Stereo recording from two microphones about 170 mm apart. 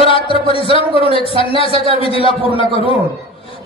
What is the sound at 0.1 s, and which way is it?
Speech, 30° left (ahead or behind).